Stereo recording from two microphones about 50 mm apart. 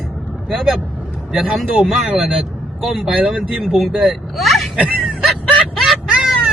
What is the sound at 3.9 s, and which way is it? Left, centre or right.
Speech, centre.